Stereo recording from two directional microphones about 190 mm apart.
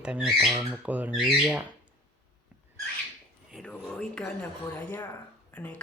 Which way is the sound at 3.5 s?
Centre (ahead or behind).